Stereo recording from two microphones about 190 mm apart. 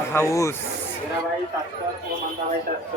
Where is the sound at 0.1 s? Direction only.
15° left (ahead or behind).